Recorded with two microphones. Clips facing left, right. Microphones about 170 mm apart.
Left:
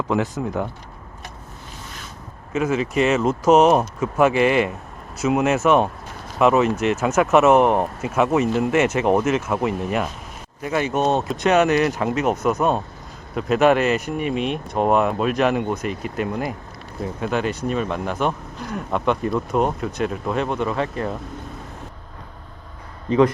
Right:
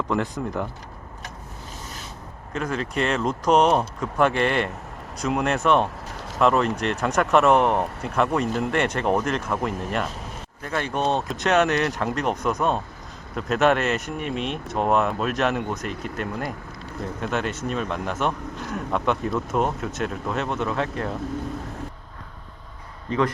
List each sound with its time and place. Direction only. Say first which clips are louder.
0.1 s speech: left 3 dB; 5° left (ahead or behind)
2.5 s speech: left 6 dB; 5° left (ahead or behind)
23.0 s a man's voice: left 7 dB; 20° left (ahead or behind)